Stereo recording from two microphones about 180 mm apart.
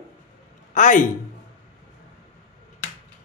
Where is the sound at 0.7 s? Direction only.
45° left (ahead or behind).